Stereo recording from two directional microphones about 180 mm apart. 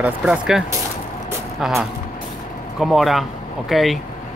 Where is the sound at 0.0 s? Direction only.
5° right (ahead or behind).